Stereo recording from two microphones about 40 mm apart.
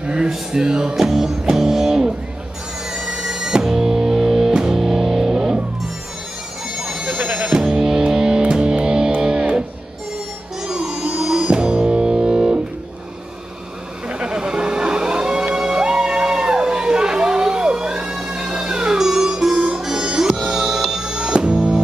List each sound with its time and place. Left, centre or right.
0.0 s a sound: right
0.5 s music: centre
6.8 s music: centre
7.1 s music: right
7.5 s music: centre
14.0 s vehicle: right
15.5 s music: centre